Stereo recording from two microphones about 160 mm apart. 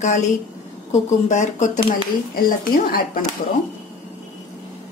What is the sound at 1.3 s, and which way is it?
Speech, 50° left (ahead or behind).